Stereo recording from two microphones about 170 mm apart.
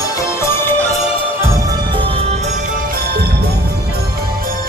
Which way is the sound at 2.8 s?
65° right (ahead or behind).